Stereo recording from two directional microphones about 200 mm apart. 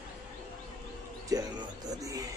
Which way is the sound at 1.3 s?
20° right (ahead or behind).